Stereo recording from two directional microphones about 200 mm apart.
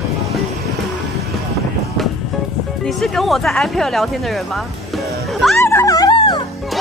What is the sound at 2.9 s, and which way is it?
Speech, centre (ahead or behind).